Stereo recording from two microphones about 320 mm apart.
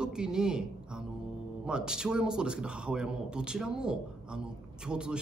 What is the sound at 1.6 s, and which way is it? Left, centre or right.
Speech, centre.